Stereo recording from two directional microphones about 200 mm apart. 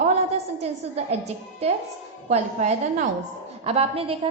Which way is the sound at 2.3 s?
35° right (ahead or behind).